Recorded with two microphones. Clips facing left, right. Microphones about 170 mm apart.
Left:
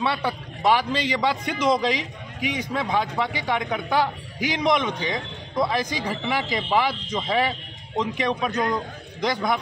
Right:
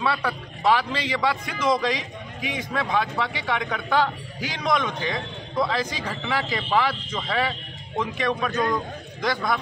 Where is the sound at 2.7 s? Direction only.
15° left (ahead or behind).